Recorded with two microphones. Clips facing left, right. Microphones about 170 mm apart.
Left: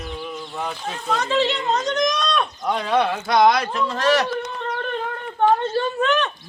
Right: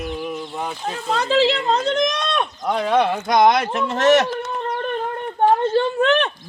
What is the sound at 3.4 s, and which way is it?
Speech, 50° right (ahead or behind).